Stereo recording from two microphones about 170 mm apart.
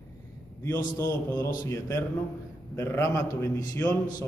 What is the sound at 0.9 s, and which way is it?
A man's voice, 15° left (ahead or behind).